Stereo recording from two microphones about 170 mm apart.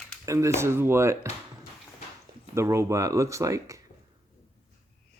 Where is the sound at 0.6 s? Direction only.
15° right (ahead or behind).